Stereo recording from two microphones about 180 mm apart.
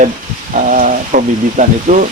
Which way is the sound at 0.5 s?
45° right (ahead or behind).